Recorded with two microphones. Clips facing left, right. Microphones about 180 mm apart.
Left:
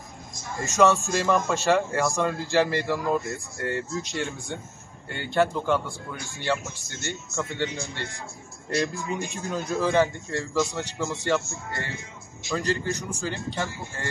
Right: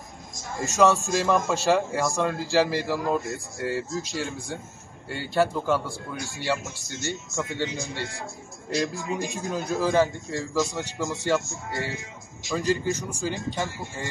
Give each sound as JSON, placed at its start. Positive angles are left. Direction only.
{"t": 0.6, "sound": "a man's voice", "side_deg": 0}
{"t": 7.2, "sound": "speech", "side_deg": -20}
{"t": 8.6, "sound": "a man's voice", "side_deg": 0}
{"t": 13.1, "sound": "speech", "side_deg": -15}